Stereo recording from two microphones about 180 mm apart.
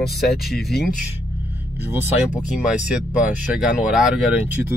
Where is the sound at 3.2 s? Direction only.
5° right (ahead or behind).